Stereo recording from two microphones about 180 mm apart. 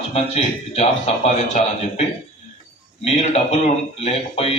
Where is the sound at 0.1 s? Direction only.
35° left (ahead or behind).